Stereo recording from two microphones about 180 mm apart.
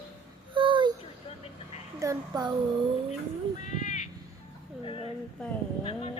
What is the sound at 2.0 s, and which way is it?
Speech, 20° right (ahead or behind).